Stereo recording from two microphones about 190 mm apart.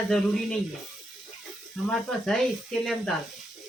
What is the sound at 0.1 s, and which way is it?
Speech, 5° left (ahead or behind).